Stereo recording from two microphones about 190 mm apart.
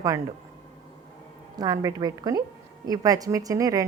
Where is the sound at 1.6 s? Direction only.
20° right (ahead or behind).